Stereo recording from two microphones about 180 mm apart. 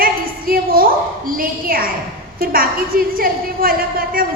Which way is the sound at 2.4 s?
55° right (ahead or behind).